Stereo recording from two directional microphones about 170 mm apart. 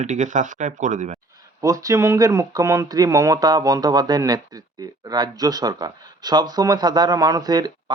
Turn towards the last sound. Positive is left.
turn(degrees=-25)  # may be behind; listen again after turning